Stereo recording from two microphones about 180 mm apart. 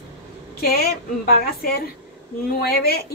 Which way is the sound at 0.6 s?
60° left (ahead or behind).